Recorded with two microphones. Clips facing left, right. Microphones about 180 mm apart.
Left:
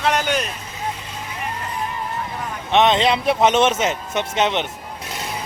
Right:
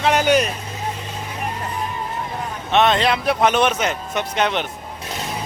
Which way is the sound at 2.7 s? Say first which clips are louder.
Left 1 dB; 20° left (ahead or behind).